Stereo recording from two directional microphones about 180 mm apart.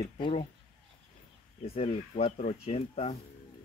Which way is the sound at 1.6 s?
35° left (ahead or behind).